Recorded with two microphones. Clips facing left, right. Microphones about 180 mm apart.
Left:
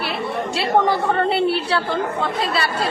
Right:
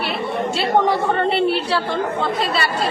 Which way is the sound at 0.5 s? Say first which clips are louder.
Even; centre (ahead or behind).